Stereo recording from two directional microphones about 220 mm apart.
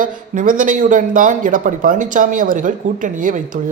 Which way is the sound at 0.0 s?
35° right (ahead or behind).